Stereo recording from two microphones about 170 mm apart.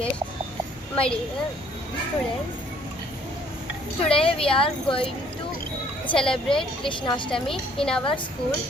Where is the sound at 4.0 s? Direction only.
35° left (ahead or behind).